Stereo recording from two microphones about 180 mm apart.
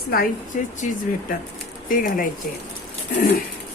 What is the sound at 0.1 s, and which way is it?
Speech, 50° left (ahead or behind).